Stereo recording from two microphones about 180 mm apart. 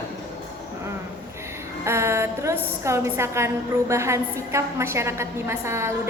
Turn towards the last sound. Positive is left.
turn(degrees=-15)  # may be behind; listen again after turning